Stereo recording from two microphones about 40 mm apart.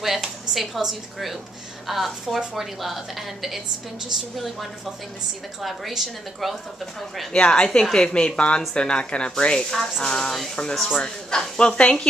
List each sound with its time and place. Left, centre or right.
0.0 s a sound: centre
0.6 s a woman's voice: centre
5.6 s a woman's voice: centre
7.3 s speech: left